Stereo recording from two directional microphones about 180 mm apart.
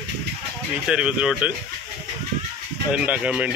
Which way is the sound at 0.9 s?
5° right (ahead or behind).